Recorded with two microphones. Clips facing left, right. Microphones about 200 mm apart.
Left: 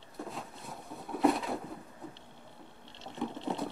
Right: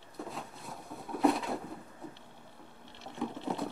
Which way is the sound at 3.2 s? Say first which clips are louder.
Even; centre (ahead or behind).